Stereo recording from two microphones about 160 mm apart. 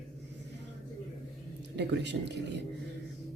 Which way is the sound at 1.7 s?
90° right.